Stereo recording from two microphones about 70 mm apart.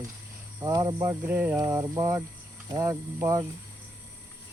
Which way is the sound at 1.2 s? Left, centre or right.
Right.